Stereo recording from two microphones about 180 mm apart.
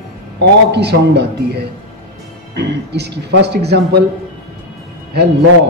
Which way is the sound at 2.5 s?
70° right (ahead or behind).